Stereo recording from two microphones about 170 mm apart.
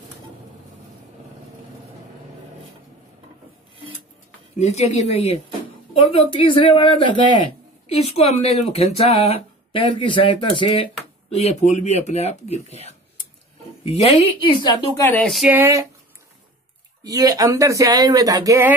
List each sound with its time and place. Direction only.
4.6 s speech: 40° left (ahead or behind)
11.3 s speech: 40° left (ahead or behind)
15.0 s speech: 10° left (ahead or behind)
15.5 s speech: 15° right (ahead or behind)
17.0 s speech: 20° right (ahead or behind)